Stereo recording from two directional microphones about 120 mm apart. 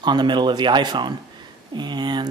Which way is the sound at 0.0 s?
35° right (ahead or behind).